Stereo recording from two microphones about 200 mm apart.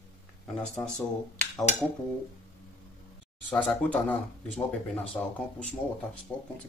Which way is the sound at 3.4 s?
5° left (ahead or behind).